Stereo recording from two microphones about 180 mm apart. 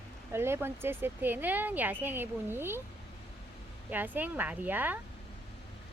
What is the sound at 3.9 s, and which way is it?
Speech, 10° right (ahead or behind).